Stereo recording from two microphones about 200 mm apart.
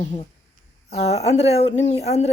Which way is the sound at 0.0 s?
35° left (ahead or behind).